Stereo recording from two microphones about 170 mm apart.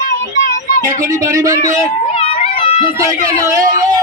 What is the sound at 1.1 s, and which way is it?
Speech, 20° right (ahead or behind).